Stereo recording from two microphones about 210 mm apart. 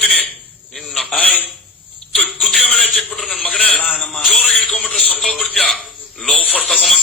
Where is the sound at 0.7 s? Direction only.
Centre (ahead or behind).